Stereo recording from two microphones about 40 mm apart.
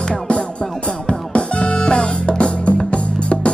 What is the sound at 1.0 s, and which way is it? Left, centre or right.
Music, left.